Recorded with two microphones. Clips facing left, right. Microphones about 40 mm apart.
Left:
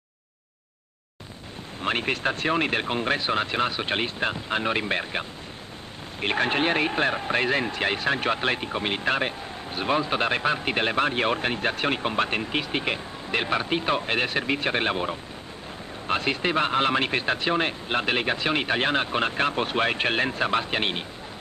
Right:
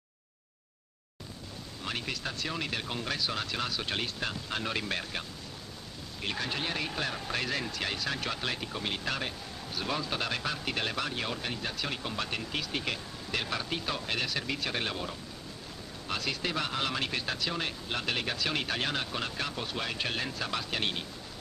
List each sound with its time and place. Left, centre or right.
1.8 s speech: left
6.2 s speech: left